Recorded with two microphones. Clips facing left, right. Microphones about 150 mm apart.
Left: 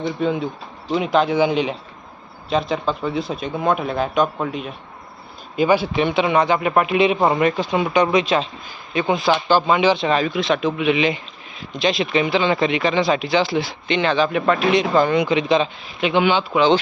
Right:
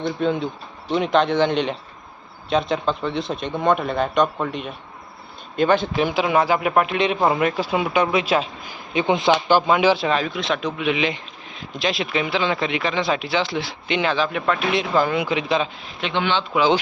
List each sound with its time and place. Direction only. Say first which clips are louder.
0.0 s speech: left 1 dB; 5° left (ahead or behind)
6.1 s speech: left 2 dB; 5° right (ahead or behind)
8.9 s speech: even; 20° right (ahead or behind); by 16.0 s centre (ahead or behind)
16.0 s speech: left 5 dB; 10° left (ahead or behind)
16.6 s speech: left 2 dB; 10° right (ahead or behind)